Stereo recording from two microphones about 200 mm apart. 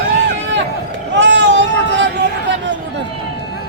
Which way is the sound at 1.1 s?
65° right (ahead or behind).